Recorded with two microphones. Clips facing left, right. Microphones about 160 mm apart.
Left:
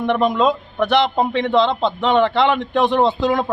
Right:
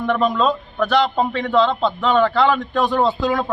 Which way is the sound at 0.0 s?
15° left (ahead or behind).